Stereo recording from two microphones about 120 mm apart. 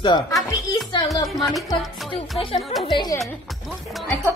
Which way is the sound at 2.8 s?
40° left (ahead or behind).